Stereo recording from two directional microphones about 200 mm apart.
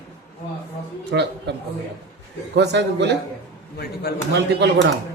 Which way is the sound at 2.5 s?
60° right (ahead or behind).